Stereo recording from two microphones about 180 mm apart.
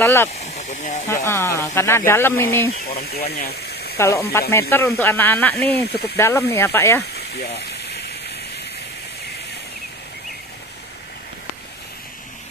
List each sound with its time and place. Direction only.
0.0 s speech: 15° left (ahead or behind)
0.4 s a sound: 40° left (ahead or behind)
1.0 s speech: 15° left (ahead or behind)
2.7 s speech: 60° left (ahead or behind)
4.0 s speech: 15° left (ahead or behind)
5.8 s speech: 60° left (ahead or behind)
6.1 s speech: 15° left (ahead or behind)
7.2 s a sound: 65° left (ahead or behind)